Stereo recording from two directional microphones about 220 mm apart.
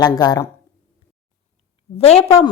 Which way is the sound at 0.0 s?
15° left (ahead or behind).